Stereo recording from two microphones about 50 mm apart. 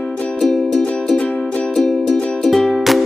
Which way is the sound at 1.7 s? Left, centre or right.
Centre.